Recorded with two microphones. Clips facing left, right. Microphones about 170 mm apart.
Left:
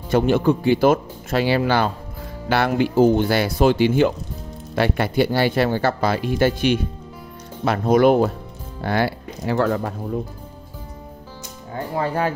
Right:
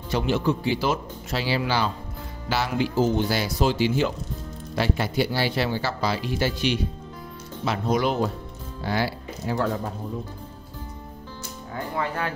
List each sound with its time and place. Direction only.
0.1 s speech: 50° left (ahead or behind); by 9.9 s 80° left
11.7 s speech: 35° left (ahead or behind)